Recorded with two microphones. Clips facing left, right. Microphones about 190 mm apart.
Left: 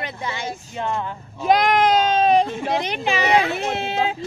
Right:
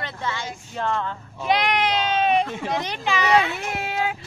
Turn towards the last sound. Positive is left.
turn(degrees=25)  # may be behind; listen again after turning